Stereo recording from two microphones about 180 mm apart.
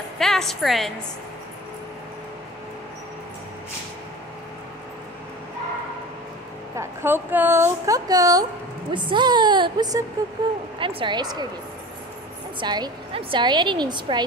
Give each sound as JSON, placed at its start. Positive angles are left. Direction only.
{"t": 0.2, "sound": "a woman's voice", "side_deg": 0}
{"t": 6.8, "sound": "a woman's voice", "side_deg": -10}
{"t": 12.5, "sound": "a woman's voice", "side_deg": -25}